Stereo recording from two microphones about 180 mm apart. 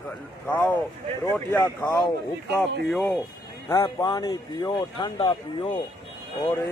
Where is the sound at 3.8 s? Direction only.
25° left (ahead or behind).